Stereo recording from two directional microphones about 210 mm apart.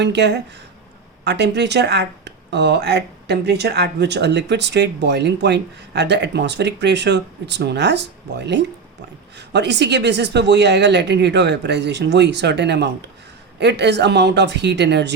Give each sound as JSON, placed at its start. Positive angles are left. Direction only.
{"t": 0.0, "sound": "speech", "side_deg": -55}